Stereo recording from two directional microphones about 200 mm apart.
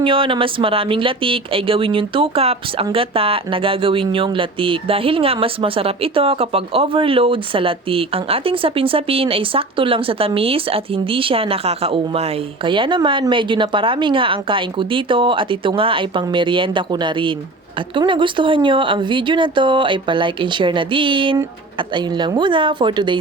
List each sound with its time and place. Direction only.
0.0 s speech: 25° right (ahead or behind)